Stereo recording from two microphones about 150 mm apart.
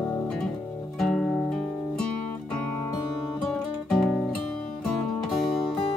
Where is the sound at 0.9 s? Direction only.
5° left (ahead or behind).